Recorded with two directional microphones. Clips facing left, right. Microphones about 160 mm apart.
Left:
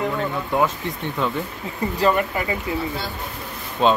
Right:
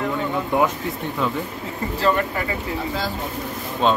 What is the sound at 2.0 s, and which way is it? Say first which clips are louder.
Speech: left 1 dB; 15° left (ahead or behind).